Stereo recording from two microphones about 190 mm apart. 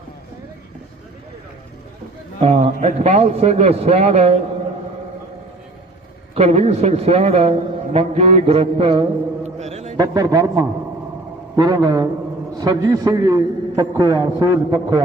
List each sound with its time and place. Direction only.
2.4 s a man's voice: 35° right (ahead or behind)
6.3 s a man's voice: 35° right (ahead or behind)
7.9 s mantra: 30° right (ahead or behind)
10.0 s a man's voice: 20° right (ahead or behind)